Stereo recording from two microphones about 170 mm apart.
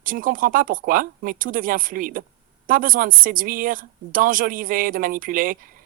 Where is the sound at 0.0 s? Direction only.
55° right (ahead or behind).